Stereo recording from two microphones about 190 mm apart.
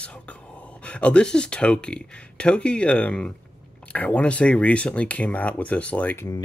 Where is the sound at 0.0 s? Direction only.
5° left (ahead or behind).